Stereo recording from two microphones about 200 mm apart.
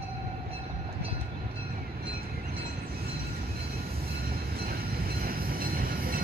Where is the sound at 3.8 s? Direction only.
50° right (ahead or behind).